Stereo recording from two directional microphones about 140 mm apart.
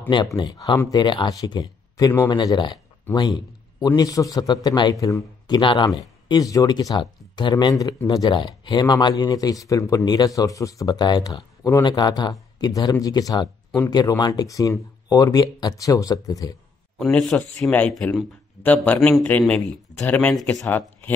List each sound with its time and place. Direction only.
0.1 s a man's voice: 30° left (ahead or behind)
5.6 s speech: 35° left (ahead or behind)
5.9 s speech: 25° left (ahead or behind)
17.0 s speech: 5° left (ahead or behind)